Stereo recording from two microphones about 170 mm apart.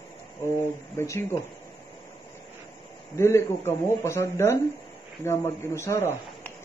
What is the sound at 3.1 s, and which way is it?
Speech, 15° left (ahead or behind).